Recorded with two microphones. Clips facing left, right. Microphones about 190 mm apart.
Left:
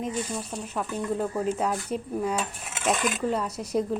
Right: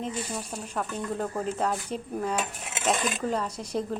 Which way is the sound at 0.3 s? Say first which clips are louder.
Left 1 dB; centre (ahead or behind).